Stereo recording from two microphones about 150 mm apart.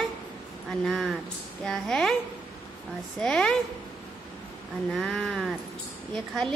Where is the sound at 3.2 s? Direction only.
5° left (ahead or behind).